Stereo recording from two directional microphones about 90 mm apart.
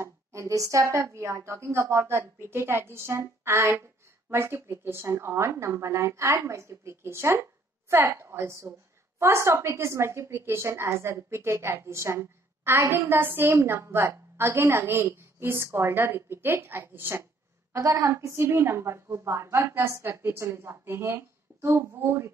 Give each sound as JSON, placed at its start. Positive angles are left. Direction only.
{"t": 0.0, "sound": "a woman's voice", "side_deg": -35}